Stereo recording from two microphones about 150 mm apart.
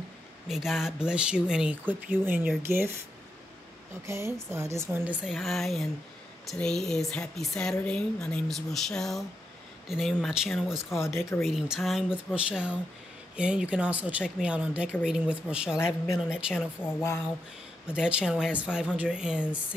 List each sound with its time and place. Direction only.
0.5 s speech: centre (ahead or behind)
4.0 s speech: 20° right (ahead or behind)
5.2 s speech: centre (ahead or behind)
11.0 s speech: 15° left (ahead or behind)
11.4 s speech: 5° right (ahead or behind)
16.8 s speech: 15° left (ahead or behind)
17.8 s speech: 5° right (ahead or behind)